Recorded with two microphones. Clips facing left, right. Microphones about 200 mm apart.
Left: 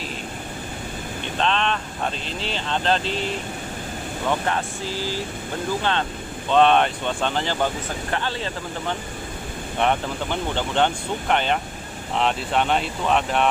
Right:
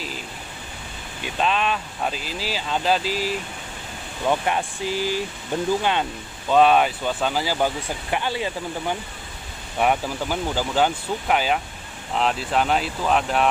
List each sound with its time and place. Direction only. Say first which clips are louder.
1.2 s speech: right 1 dB; 5° right (ahead or behind)
6.5 s speech: right 1 dB; 5° right (ahead or behind)